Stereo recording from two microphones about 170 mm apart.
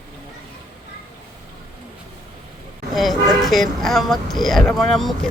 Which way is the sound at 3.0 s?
Centre (ahead or behind).